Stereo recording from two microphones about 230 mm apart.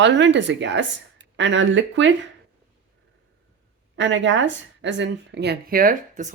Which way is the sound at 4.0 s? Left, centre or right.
Right.